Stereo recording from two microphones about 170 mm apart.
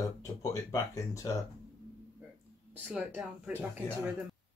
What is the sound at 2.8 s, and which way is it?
Speech, 5° right (ahead or behind).